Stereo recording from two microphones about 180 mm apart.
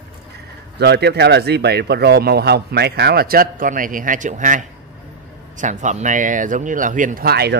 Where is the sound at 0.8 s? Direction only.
65° right (ahead or behind); by 4.6 s 45° right (ahead or behind).